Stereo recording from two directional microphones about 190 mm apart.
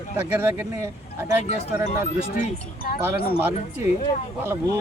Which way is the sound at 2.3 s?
50° left (ahead or behind).